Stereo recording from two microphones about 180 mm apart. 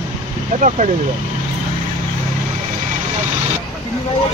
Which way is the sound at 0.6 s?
40° right (ahead or behind).